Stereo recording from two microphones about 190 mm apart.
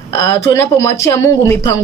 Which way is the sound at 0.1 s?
15° left (ahead or behind).